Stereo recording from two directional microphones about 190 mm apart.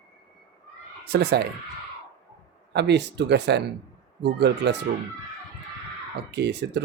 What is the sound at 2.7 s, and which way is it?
Speech, 65° right (ahead or behind).